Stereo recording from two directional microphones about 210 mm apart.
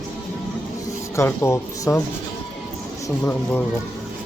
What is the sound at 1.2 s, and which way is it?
Speech, 15° left (ahead or behind).